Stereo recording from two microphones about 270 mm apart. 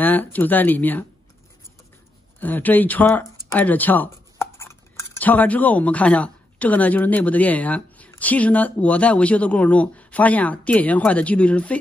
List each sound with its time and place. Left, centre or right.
0.0 s speech: centre
2.4 s speech: centre